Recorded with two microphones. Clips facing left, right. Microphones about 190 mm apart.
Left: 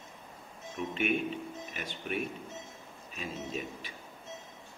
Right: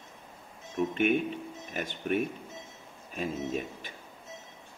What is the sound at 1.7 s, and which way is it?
A man's voice, 50° right (ahead or behind).